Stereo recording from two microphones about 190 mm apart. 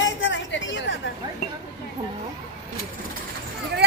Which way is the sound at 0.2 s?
75° left (ahead or behind).